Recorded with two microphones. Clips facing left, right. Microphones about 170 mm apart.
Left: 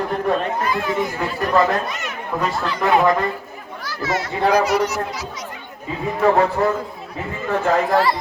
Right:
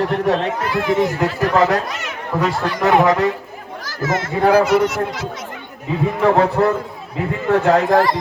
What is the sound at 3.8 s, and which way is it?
A child's voice, 45° right (ahead or behind).